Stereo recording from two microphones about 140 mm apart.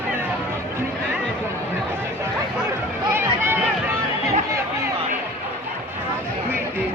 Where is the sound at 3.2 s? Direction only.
15° right (ahead or behind).